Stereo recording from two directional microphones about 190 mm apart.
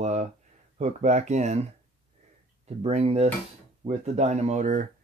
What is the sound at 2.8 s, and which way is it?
Speech, 35° right (ahead or behind).